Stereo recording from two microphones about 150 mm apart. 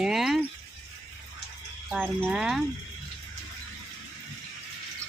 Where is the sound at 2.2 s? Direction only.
5° right (ahead or behind).